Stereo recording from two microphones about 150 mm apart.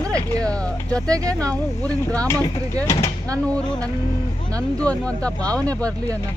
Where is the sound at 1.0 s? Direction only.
25° right (ahead or behind).